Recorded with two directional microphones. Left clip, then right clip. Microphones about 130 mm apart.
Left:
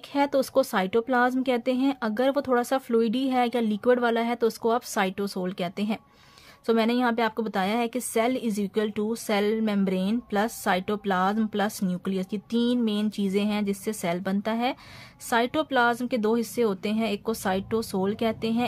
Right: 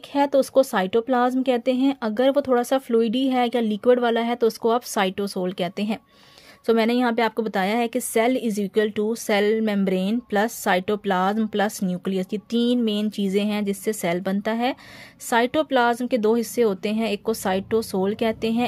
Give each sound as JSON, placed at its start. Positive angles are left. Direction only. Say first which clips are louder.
{"t": 0.1, "sound": "a woman's voice", "louder": "right 5 dB", "side_deg": -20}